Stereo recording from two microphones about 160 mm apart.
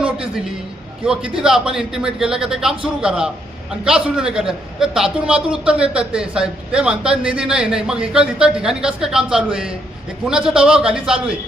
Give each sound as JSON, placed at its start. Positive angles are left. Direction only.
{"t": 1.0, "sound": "a man's voice", "side_deg": -5}